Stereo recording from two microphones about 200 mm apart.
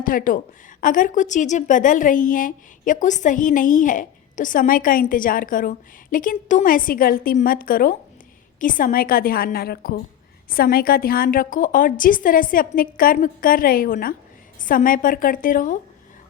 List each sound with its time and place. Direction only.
0.0 s a woman's voice: 45° left (ahead or behind)